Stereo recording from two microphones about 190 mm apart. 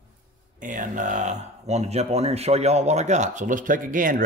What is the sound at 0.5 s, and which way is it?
Speech, 45° right (ahead or behind).